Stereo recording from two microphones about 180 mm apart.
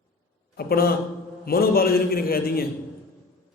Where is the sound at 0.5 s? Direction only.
60° left (ahead or behind).